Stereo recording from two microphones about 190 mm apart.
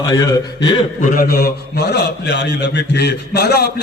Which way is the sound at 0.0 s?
20° left (ahead or behind).